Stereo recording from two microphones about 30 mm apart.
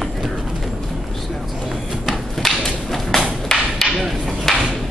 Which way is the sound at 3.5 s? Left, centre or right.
Left.